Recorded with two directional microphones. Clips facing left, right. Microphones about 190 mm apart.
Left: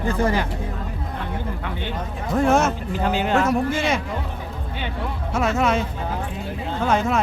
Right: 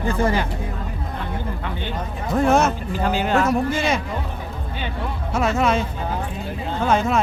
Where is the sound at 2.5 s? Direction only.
35° right (ahead or behind).